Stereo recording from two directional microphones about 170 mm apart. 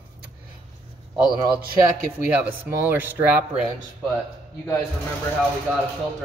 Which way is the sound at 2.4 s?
10° right (ahead or behind).